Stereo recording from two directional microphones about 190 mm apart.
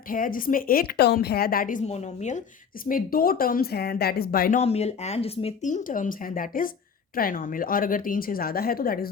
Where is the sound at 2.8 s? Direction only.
50° left (ahead or behind).